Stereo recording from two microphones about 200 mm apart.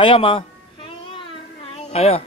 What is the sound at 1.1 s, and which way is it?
Baby cry, 30° left (ahead or behind).